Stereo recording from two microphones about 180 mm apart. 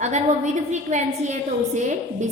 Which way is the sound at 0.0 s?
40° right (ahead or behind).